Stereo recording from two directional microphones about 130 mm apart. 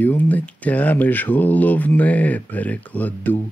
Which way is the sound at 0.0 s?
15° left (ahead or behind).